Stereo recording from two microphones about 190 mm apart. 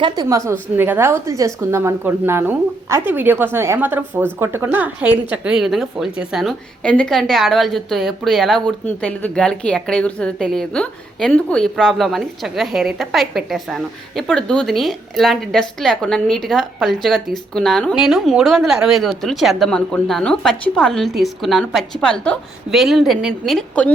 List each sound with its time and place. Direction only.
0.0 s a woman's voice: 20° right (ahead or behind); by 23.9 s 5° left (ahead or behind)